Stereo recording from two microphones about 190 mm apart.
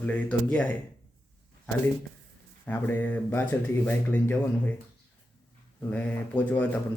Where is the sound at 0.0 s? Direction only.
5° left (ahead or behind).